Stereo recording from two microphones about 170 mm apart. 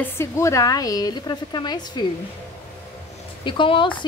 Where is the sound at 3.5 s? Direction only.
30° left (ahead or behind).